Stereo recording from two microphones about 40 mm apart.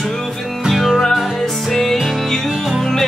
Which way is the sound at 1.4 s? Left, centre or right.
Centre.